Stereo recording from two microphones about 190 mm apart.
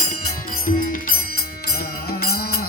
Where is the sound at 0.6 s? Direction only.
45° left (ahead or behind).